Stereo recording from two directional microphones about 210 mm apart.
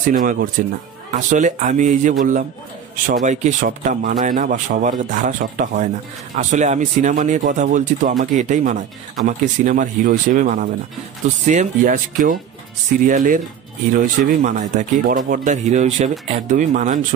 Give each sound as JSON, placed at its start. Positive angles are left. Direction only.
{"t": 0.1, "sound": "speech", "side_deg": -40}